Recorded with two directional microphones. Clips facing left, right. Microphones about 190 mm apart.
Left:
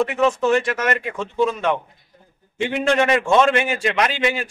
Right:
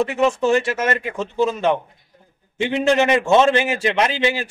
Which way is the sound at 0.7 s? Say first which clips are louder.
Right 1 dB; 25° right (ahead or behind).